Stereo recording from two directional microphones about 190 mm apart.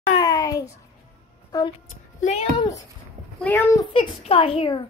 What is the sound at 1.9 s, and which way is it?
Speech, 40° left (ahead or behind).